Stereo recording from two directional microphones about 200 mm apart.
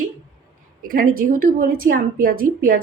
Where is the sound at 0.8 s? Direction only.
45° right (ahead or behind).